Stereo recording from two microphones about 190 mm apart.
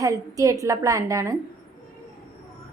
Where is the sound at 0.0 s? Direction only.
15° right (ahead or behind).